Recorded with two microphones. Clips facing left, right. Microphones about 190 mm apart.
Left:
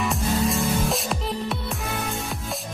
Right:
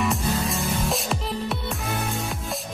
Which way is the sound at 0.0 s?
Centre (ahead or behind).